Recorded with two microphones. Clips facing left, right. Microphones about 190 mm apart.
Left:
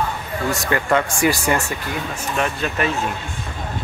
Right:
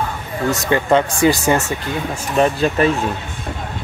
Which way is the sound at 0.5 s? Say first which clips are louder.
Right 4 dB; 20° right (ahead or behind).